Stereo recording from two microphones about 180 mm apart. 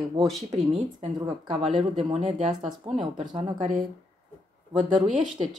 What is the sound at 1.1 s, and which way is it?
Speech, 25° right (ahead or behind).